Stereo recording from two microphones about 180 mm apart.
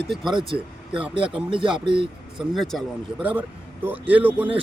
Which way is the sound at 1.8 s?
30° right (ahead or behind).